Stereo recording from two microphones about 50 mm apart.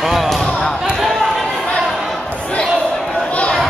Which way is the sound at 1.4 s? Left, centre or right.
Centre.